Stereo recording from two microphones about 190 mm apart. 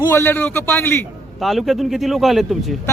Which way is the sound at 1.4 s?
Centre (ahead or behind).